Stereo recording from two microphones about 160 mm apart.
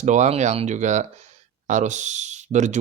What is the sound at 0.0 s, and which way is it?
Speech, 50° right (ahead or behind).